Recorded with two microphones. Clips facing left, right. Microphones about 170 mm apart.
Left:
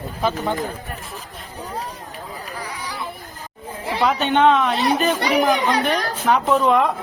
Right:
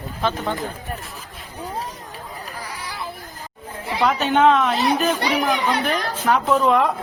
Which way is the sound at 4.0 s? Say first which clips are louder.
Even; centre (ahead or behind).